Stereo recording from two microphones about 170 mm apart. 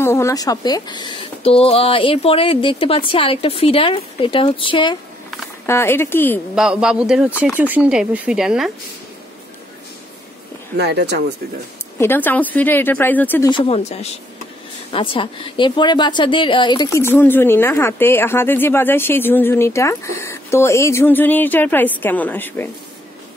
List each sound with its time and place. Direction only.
0.0 s speech: 15° left (ahead or behind)
5.7 s speech: 15° left (ahead or behind)
6.5 s speech: 5° right (ahead or behind)
10.8 s speech: 85° right
12.0 s speech: 10° left (ahead or behind)
13.5 s a woman's voice: 35° left (ahead or behind)
17.0 s speech: 10° left (ahead or behind)